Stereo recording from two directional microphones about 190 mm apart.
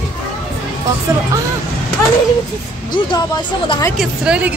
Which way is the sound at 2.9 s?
25° left (ahead or behind).